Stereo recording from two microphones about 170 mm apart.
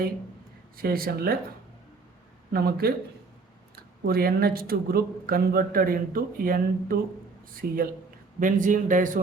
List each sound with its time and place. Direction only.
0.8 s speech: 60° right (ahead or behind)
2.5 s speech: 65° right (ahead or behind)
4.0 s a man's voice: 60° right (ahead or behind)